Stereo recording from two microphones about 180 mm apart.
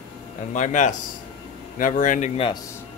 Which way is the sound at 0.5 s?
40° left (ahead or behind).